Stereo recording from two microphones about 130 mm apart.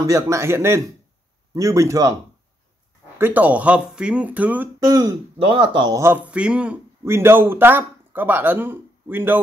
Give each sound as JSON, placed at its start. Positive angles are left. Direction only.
{"t": 0.0, "sound": "a man's voice", "side_deg": -25}
{"t": 3.2, "sound": "a man's voice", "side_deg": -15}
{"t": 4.8, "sound": "a man's voice", "side_deg": -30}
{"t": 5.4, "sound": "speech", "side_deg": -40}
{"t": 5.9, "sound": "a man's voice", "side_deg": -15}